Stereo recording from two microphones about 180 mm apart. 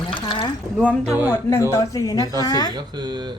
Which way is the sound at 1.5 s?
15° left (ahead or behind).